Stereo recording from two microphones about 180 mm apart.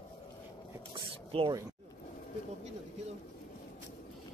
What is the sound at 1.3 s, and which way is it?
Speech, 25° right (ahead or behind).